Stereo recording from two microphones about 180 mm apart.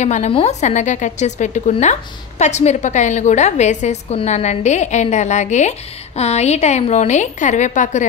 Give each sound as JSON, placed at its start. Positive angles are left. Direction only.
{"t": 0.0, "sound": "a woman's voice", "side_deg": 40}